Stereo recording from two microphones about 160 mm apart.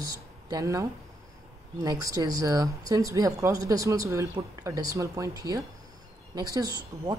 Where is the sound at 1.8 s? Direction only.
20° right (ahead or behind).